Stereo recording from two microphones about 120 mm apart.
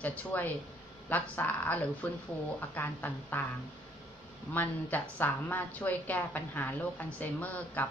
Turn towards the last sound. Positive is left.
turn(degrees=15)  # may be behind; listen again after turning